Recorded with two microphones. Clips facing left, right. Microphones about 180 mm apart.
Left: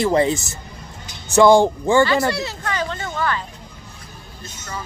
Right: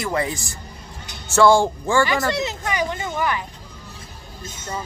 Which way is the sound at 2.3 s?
20° right (ahead or behind).